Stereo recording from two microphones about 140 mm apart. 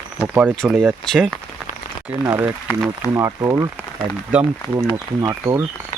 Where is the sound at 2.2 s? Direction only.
15° right (ahead or behind).